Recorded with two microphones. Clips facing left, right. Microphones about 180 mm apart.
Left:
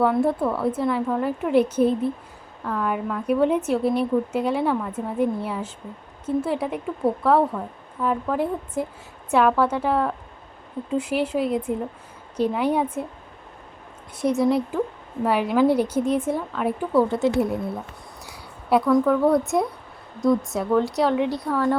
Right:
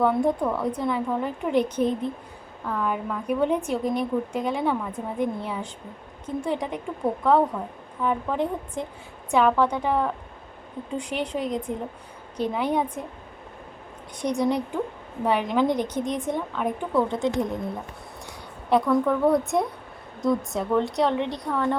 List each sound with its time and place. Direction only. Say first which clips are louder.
0.0 s a woman's voice: left 2 dB; 5° left (ahead or behind)
14.2 s a woman's voice: left 4 dB; 5° left (ahead or behind)
18.7 s speech: left 3 dB; centre (ahead or behind)